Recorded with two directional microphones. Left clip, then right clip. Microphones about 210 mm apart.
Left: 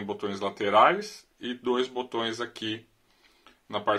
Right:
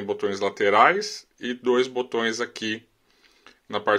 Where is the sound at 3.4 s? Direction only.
35° right (ahead or behind).